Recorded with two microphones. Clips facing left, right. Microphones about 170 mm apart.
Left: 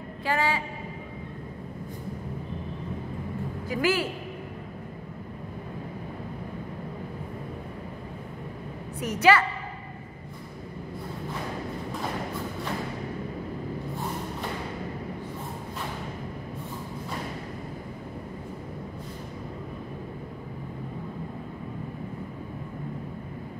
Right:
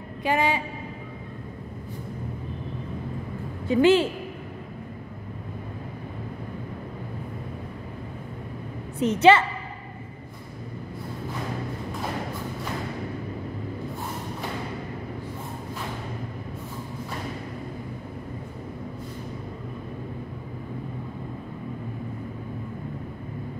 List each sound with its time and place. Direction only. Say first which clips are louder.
0.2 s a woman's voice: right 3 dB; 20° right (ahead or behind)
3.6 s a woman's voice: right 8 dB; 25° right (ahead or behind)
9.0 s a woman's voice: right 4 dB; 25° right (ahead or behind)